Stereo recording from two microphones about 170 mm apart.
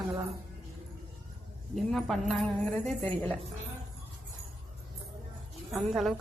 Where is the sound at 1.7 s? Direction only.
Centre (ahead or behind).